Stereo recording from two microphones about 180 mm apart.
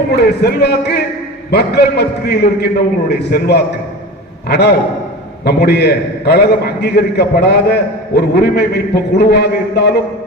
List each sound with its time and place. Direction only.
0.1 s a man's voice: 65° left (ahead or behind)